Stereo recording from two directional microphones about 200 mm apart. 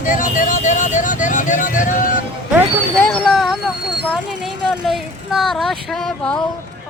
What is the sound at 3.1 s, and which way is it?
Vehicle, centre (ahead or behind).